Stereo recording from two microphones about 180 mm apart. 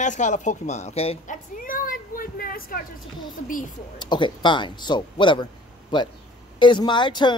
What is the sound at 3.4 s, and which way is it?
Speech, 50° left (ahead or behind).